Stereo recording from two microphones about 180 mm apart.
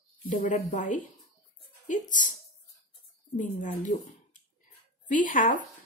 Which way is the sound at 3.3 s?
45° left (ahead or behind).